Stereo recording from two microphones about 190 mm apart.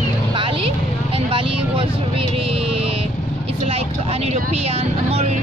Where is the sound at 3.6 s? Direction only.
35° right (ahead or behind).